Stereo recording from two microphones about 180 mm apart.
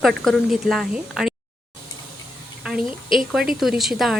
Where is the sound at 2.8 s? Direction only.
30° left (ahead or behind).